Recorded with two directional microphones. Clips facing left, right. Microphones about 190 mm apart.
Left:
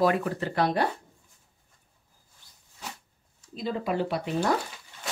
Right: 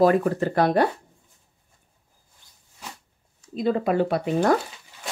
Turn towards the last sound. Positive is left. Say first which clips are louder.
# right 6 dB
turn(degrees=-50)  # may be behind; listen again after turning